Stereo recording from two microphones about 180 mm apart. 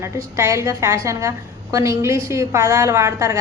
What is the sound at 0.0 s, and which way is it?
A woman's voice, 15° right (ahead or behind).